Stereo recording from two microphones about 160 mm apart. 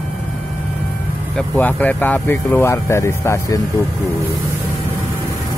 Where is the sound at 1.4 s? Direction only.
10° left (ahead or behind).